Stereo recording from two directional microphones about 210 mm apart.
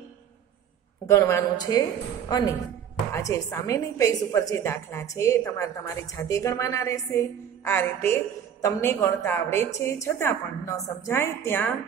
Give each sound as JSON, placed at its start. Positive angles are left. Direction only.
{"t": 1.0, "sound": "a woman's voice", "side_deg": 15}